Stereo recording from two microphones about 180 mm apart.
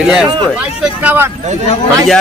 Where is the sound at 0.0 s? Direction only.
Centre (ahead or behind).